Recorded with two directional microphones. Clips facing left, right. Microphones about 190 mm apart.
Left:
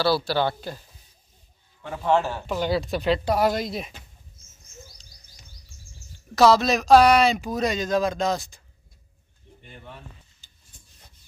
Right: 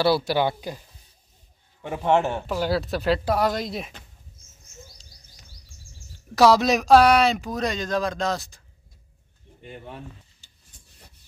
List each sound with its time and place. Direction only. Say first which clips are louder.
0.0 s a man's voice: right 1 dB; 20° right (ahead or behind)
2.4 s speech: even; 5° right (ahead or behind)
6.3 s speech: even; 10° right (ahead or behind)